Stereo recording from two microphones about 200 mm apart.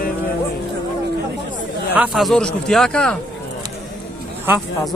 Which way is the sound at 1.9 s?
5° right (ahead or behind).